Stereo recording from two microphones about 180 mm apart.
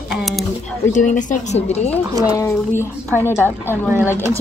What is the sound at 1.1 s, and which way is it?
Speech, 40° left (ahead or behind).